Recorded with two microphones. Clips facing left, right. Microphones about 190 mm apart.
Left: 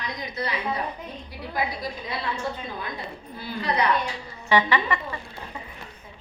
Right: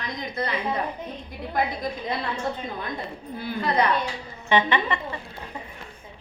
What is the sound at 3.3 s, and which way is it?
Speech, 50° right (ahead or behind).